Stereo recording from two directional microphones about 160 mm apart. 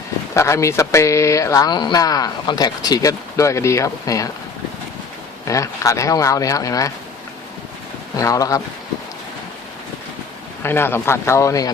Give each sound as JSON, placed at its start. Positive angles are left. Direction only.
{"t": 0.3, "sound": "speech", "side_deg": 20}
{"t": 5.5, "sound": "speech", "side_deg": 20}
{"t": 8.1, "sound": "speech", "side_deg": 20}
{"t": 10.6, "sound": "speech", "side_deg": 15}